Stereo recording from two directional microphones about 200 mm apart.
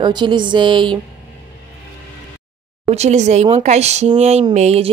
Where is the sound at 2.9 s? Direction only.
35° right (ahead or behind).